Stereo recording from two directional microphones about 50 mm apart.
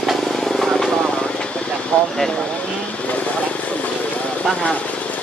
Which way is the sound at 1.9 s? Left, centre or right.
Left.